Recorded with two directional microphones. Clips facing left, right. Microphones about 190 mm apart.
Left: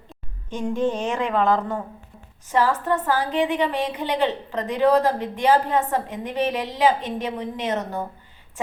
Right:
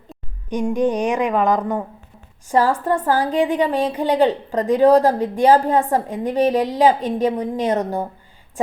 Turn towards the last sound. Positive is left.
turn(degrees=-35)  # may be behind; listen again after turning